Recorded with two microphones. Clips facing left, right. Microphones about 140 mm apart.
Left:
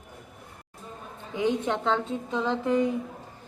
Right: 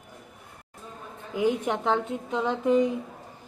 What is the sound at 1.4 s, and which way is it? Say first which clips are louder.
A woman's voice: right 1 dB; 10° right (ahead or behind).